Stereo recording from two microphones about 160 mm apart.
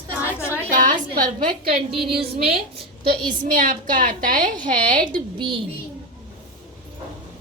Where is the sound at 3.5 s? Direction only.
60° right (ahead or behind).